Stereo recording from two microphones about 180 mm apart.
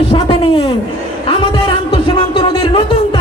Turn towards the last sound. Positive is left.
turn(degrees=30)  # may be behind; listen again after turning